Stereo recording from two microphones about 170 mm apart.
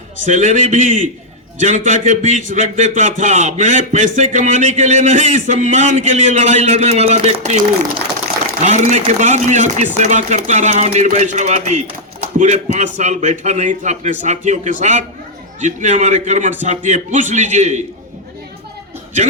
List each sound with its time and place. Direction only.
0.3 s a man's voice: 45° right (ahead or behind)
8.6 s a man's voice: 45° right (ahead or behind)